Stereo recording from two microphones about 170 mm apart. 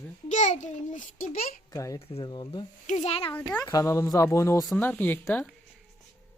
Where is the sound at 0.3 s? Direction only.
45° left (ahead or behind).